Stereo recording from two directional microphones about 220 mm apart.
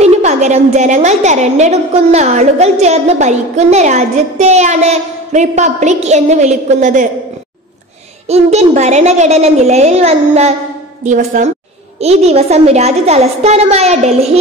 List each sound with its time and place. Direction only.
0.0 s a woman's voice: 30° right (ahead or behind)
8.3 s a woman's voice: 30° right (ahead or behind)